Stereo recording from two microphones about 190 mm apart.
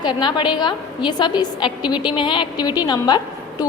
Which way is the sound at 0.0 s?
25° left (ahead or behind).